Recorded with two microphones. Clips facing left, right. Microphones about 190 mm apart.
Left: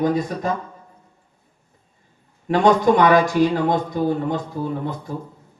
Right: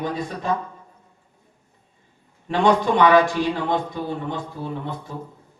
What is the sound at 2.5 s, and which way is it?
A man's voice, 40° left (ahead or behind).